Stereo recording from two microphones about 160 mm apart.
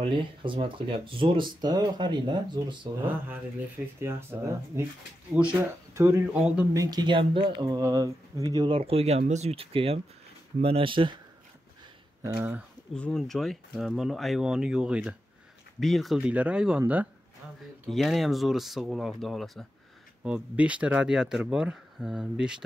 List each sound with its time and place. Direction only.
0.0 s speech: 30° right (ahead or behind)
4.0 s speech: 15° right (ahead or behind)
6.7 s speech: 25° right (ahead or behind)
12.4 s speech: 10° right (ahead or behind)
12.9 s speech: 5° left (ahead or behind)